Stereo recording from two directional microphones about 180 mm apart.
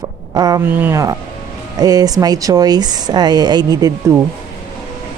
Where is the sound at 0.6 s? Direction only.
10° right (ahead or behind).